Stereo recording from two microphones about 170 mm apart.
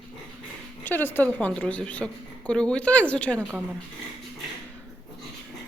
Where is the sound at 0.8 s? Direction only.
10° left (ahead or behind).